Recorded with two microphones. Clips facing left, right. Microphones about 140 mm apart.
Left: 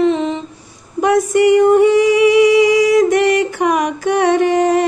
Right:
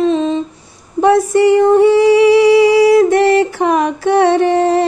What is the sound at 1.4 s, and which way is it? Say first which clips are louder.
Singing: left 1 dB; 30° right (ahead or behind).